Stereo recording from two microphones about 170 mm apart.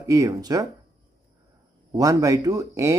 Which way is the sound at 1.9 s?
20° right (ahead or behind).